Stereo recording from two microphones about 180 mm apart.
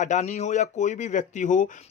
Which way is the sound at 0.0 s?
40° left (ahead or behind).